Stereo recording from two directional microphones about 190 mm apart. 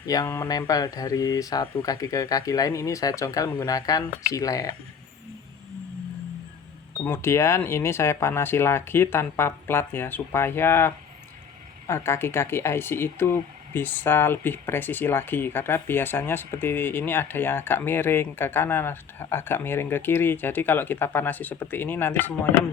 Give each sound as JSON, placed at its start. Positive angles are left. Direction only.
{"t": 0.1, "sound": "speech", "side_deg": 15}
{"t": 6.9, "sound": "speech", "side_deg": 10}